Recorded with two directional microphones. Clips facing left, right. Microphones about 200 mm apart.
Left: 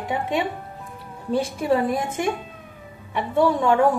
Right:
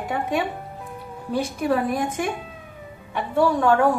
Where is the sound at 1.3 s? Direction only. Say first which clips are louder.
Left 1 dB; 25° left (ahead or behind).